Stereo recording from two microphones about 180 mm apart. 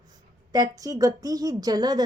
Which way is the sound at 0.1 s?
20° right (ahead or behind).